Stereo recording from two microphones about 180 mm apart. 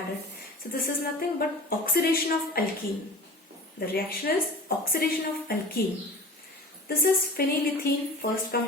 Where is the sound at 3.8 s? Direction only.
55° left (ahead or behind).